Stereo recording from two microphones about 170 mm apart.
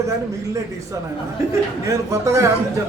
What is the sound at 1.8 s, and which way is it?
Speech, 20° right (ahead or behind).